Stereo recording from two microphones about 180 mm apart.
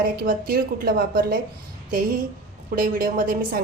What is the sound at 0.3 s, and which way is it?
A woman's voice, 55° right (ahead or behind).